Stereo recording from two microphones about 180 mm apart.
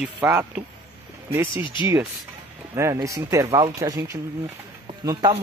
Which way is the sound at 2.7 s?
15° right (ahead or behind).